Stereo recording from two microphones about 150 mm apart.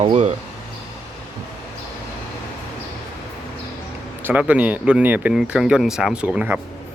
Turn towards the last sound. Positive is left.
turn(degrees=-5)  # may be behind; listen again after turning